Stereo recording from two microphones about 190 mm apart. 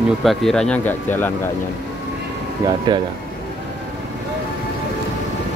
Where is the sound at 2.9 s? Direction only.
25° right (ahead or behind).